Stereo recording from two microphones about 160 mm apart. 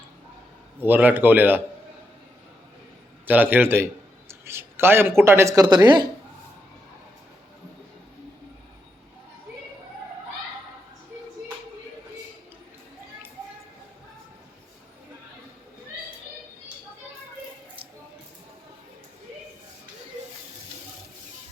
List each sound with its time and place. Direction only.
0.8 s speech: 10° right (ahead or behind)
3.2 s speech: 10° right (ahead or behind)
4.3 s a sound: 15° right (ahead or behind)
5.2 s speech: 15° right (ahead or behind)